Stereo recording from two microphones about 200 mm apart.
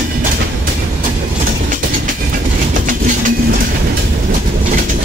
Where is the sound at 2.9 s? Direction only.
40° right (ahead or behind).